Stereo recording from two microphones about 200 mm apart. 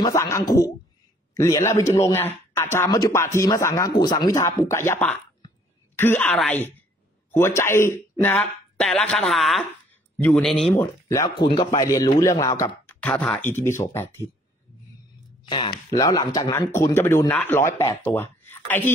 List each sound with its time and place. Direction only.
0.0 s speech: 15° left (ahead or behind)
15.4 s speech: 25° left (ahead or behind); by 18.9 s 10° left (ahead or behind)